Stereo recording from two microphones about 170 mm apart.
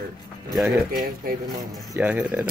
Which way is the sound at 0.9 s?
55° right (ahead or behind).